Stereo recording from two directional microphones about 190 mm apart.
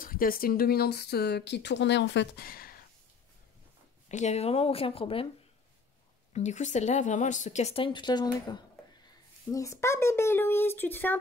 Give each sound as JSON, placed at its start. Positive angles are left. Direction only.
{"t": 0.0, "sound": "speech", "side_deg": 50}
{"t": 4.1, "sound": "speech", "side_deg": 35}
{"t": 6.3, "sound": "speech", "side_deg": 40}